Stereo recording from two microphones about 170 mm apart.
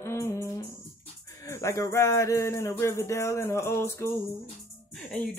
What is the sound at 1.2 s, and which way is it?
Speech, 15° left (ahead or behind).